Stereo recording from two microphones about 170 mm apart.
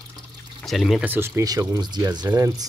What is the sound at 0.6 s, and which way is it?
Speech, centre (ahead or behind).